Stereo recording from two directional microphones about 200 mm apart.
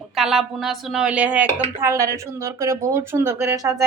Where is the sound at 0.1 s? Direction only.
Centre (ahead or behind).